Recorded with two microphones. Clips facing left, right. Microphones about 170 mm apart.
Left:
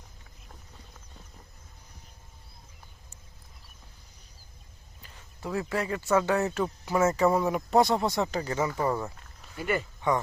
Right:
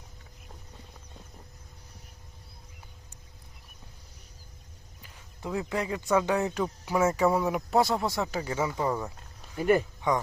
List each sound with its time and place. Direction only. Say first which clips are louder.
5.0 s speech: even; 15° right (ahead or behind)
9.6 s speech: right 6 dB; 40° right (ahead or behind)
10.0 s speech: left 2 dB; 10° right (ahead or behind)